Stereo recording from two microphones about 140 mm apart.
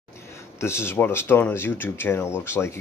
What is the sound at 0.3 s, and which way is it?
Speech, 20° left (ahead or behind).